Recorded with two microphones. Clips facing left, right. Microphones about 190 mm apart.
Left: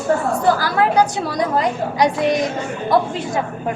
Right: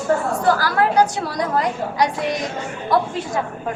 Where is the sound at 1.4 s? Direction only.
20° left (ahead or behind).